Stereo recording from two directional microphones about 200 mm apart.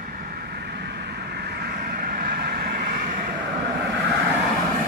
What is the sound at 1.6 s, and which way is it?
Vehicle, 45° right (ahead or behind).